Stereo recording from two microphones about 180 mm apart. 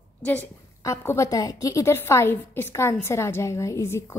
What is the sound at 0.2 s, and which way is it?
A woman's voice, 10° left (ahead or behind).